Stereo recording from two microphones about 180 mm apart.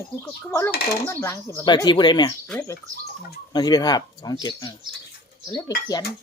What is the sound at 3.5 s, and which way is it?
Speech, 25° left (ahead or behind).